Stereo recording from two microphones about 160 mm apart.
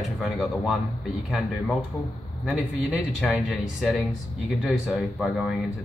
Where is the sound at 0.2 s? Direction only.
Centre (ahead or behind).